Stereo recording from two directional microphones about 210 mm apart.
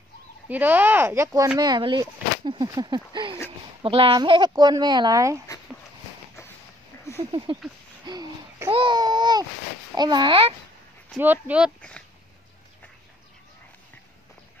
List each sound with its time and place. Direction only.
0.5 s speech: 10° right (ahead or behind)
7.2 s speech: 25° right (ahead or behind)
8.0 s a sound: 20° right (ahead or behind)
8.7 s babbling: 20° right (ahead or behind)
9.9 s speech: 20° right (ahead or behind)
11.1 s speech: 10° right (ahead or behind)